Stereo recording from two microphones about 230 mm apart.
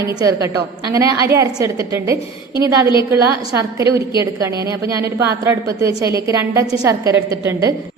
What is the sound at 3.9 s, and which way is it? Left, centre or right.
A woman's voice, centre.